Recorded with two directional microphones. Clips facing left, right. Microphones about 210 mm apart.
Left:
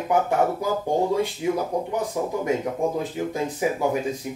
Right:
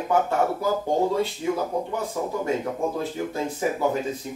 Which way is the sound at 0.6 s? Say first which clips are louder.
Even; 15° left (ahead or behind).